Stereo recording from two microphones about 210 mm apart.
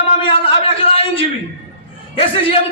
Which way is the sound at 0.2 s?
25° left (ahead or behind).